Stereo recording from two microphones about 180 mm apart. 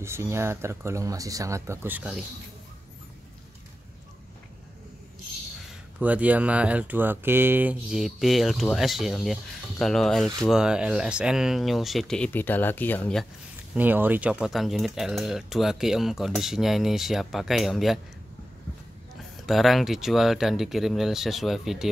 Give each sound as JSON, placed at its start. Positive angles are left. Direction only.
{"t": 0.0, "sound": "speech", "side_deg": -15}
{"t": 5.7, "sound": "speech", "side_deg": -10}
{"t": 13.7, "sound": "speech", "side_deg": -10}
{"t": 19.4, "sound": "speech", "side_deg": 0}